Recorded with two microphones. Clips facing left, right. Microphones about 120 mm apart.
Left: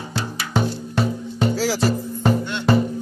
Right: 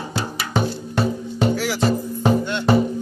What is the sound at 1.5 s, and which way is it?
Music, 25° left (ahead or behind).